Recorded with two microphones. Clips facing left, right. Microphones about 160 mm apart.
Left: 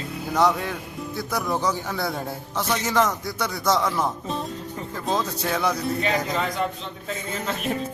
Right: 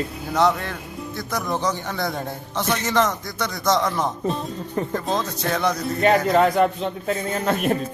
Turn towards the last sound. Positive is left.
turn(degrees=-55)  # may be behind; listen again after turning